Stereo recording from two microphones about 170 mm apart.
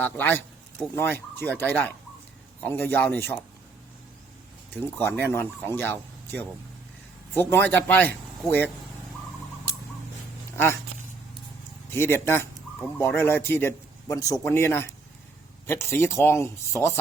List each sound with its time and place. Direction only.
0.0 s speech: 10° left (ahead or behind)
4.7 s speech: 15° left (ahead or behind)
11.9 s speech: 15° left (ahead or behind)